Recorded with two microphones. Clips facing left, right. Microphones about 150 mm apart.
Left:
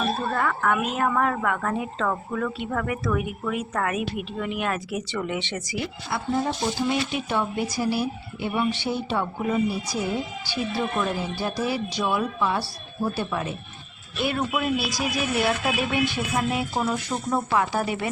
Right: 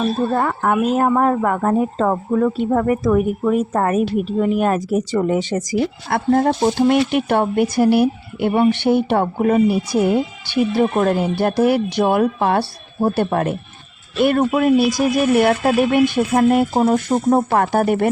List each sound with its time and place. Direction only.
0.3 s a woman's voice: 35° right (ahead or behind)
6.1 s speech: 60° right (ahead or behind)